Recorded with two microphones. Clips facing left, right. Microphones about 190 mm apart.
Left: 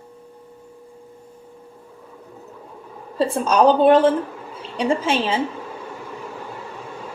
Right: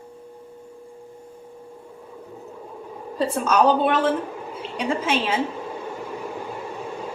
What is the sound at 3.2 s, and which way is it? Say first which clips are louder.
Speech: left 3 dB; 30° left (ahead or behind).